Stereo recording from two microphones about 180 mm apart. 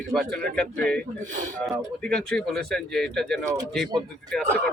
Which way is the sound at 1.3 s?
45° right (ahead or behind).